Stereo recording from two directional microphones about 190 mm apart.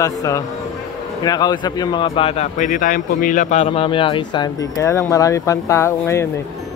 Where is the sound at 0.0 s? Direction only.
15° left (ahead or behind).